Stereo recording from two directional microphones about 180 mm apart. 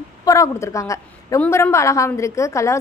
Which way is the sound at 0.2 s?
15° left (ahead or behind).